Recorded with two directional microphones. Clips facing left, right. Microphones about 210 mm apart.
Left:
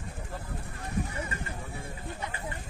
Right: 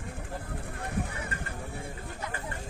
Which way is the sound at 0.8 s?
60° right (ahead or behind).